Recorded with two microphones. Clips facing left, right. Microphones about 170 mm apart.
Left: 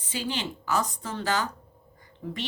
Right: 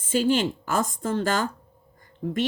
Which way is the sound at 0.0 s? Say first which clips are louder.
Right 10 dB; 50° right (ahead or behind).